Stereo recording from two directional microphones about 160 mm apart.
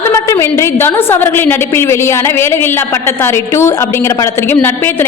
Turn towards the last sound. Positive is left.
turn(degrees=15)  # may be behind; listen again after turning